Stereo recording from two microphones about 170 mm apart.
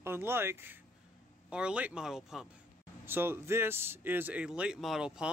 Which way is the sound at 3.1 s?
15° right (ahead or behind).